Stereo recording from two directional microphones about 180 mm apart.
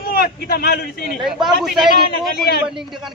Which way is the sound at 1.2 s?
5° right (ahead or behind).